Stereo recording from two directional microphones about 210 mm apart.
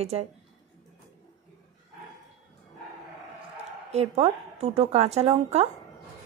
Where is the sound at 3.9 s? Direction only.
30° right (ahead or behind).